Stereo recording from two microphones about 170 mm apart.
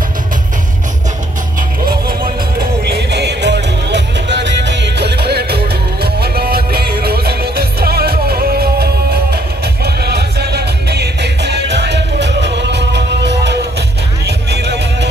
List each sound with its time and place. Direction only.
1.9 s music: 60° right (ahead or behind)
2.8 s music: 75° right (ahead or behind)